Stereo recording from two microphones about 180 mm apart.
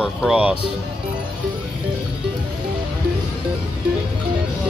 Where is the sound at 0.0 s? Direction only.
5° right (ahead or behind).